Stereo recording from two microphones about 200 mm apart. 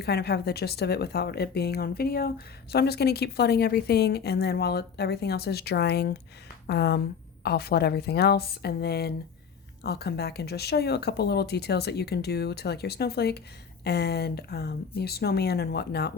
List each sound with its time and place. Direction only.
0.0 s speech: 55° left (ahead or behind)